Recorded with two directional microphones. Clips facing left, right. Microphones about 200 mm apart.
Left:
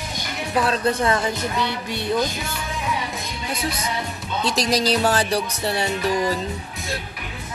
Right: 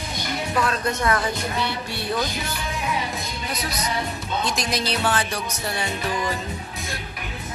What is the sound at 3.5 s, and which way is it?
Music, 30° left (ahead or behind).